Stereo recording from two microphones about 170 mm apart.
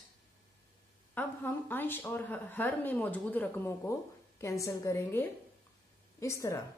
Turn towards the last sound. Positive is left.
turn(degrees=15)  # may be behind; listen again after turning